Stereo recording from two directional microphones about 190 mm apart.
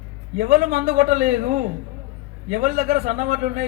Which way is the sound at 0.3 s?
45° right (ahead or behind).